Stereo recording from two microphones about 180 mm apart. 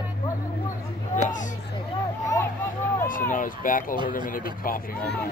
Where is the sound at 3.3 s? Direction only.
50° left (ahead or behind).